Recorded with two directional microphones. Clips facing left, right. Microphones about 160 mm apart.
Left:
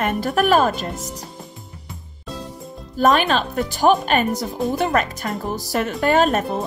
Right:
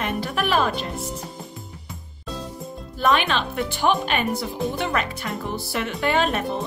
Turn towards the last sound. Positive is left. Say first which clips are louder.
# left 5 dB
turn(degrees=45)  # may be behind; listen again after turning